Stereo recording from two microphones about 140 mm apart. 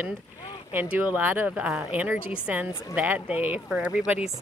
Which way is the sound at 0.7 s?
15° right (ahead or behind).